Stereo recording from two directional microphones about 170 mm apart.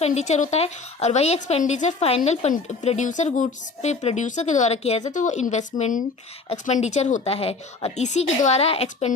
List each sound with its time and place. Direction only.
0.0 s a woman's voice: 40° left (ahead or behind)
6.7 s a woman's voice: 45° left (ahead or behind)